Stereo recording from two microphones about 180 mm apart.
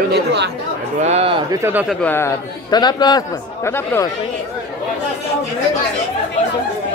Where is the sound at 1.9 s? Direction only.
10° left (ahead or behind).